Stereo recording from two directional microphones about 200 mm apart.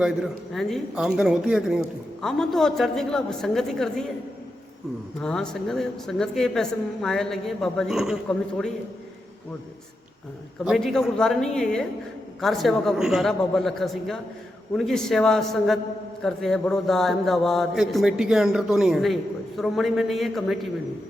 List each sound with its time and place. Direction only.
0.0 s a man's voice: centre (ahead or behind)
5.2 s a man's voice: 5° left (ahead or behind)
10.7 s a man's voice: centre (ahead or behind)